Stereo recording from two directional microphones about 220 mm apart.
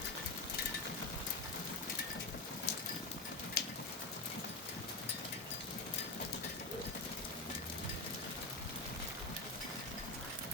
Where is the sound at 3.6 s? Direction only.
45° left (ahead or behind).